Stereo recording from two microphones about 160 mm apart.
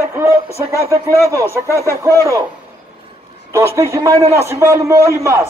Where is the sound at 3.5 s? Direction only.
20° right (ahead or behind).